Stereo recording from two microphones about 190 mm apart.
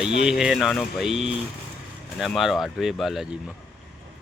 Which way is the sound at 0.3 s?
Centre (ahead or behind).